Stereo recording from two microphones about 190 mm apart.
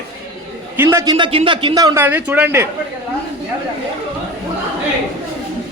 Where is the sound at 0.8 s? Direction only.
15° right (ahead or behind).